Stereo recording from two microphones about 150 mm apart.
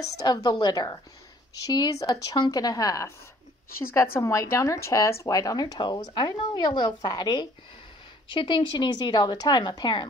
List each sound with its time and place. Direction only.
0.2 s speech: 25° left (ahead or behind)